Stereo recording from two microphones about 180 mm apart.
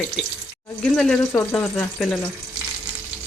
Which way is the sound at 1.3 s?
10° left (ahead or behind).